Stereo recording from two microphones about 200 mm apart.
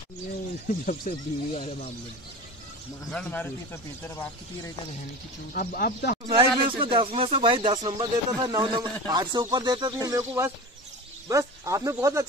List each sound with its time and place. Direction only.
0.8 s speech: 35° left (ahead or behind)
3.1 s speech: 5° left (ahead or behind)
5.5 s speech: 45° left (ahead or behind)
6.2 s speech: 25° right (ahead or behind)